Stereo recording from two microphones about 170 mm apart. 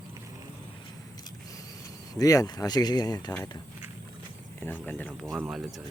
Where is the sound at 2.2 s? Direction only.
20° left (ahead or behind).